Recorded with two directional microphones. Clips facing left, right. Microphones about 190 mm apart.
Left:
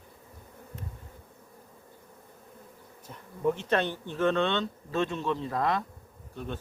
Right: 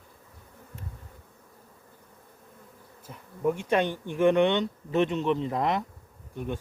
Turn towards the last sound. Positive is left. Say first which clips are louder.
# right 4 dB
turn(degrees=-15)  # may be behind; listen again after turning